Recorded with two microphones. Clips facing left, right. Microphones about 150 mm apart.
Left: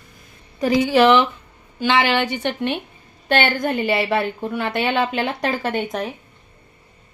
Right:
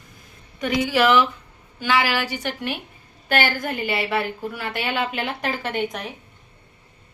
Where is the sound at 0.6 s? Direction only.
35° left (ahead or behind).